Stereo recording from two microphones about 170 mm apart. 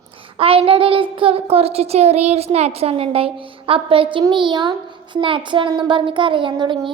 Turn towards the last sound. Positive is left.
turn(degrees=-25)  # may be behind; listen again after turning